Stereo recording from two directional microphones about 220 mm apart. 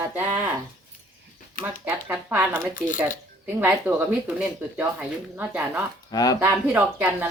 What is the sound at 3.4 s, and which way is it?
A woman's voice, 10° right (ahead or behind).